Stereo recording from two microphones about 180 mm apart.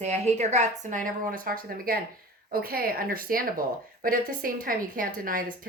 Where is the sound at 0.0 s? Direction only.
40° right (ahead or behind).